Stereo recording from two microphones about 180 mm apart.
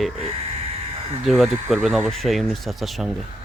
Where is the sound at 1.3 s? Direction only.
Centre (ahead or behind).